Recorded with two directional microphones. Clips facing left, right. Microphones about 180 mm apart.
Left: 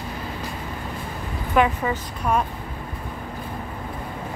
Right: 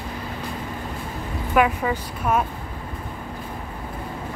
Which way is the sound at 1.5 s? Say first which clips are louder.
Even; 5° right (ahead or behind).